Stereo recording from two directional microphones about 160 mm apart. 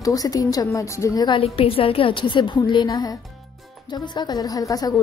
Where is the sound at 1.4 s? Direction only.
35° left (ahead or behind).